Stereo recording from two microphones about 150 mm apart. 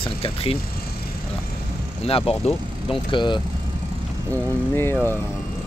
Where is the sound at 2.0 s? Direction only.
40° left (ahead or behind).